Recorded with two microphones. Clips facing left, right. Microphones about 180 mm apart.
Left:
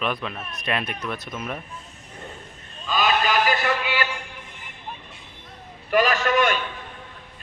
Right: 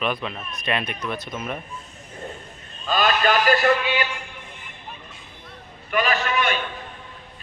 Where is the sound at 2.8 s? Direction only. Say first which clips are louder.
Right 2 dB; 50° right (ahead or behind).